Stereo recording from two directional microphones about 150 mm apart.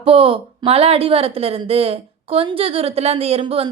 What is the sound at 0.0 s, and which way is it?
Speech, 40° right (ahead or behind).